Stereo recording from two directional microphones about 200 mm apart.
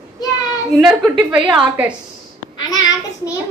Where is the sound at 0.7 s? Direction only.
10° right (ahead or behind).